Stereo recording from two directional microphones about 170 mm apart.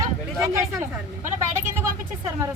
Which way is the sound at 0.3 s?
20° right (ahead or behind).